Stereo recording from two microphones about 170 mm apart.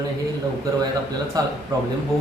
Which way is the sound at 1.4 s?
20° right (ahead or behind).